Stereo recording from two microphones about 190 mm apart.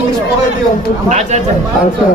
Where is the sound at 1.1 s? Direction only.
40° right (ahead or behind).